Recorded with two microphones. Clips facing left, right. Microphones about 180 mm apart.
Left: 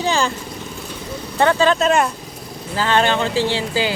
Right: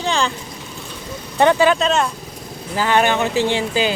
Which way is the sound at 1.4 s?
15° right (ahead or behind).